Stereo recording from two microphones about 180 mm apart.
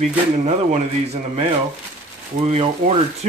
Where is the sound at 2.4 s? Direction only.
35° right (ahead or behind).